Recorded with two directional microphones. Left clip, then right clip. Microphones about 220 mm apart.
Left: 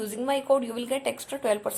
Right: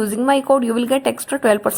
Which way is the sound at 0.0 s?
20° right (ahead or behind).